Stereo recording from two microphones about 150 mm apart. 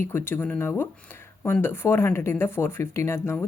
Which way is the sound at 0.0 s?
15° left (ahead or behind).